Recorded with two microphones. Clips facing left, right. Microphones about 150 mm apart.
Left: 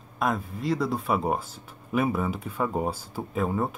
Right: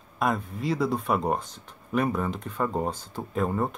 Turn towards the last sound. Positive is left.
turn(degrees=5)  # may be behind; listen again after turning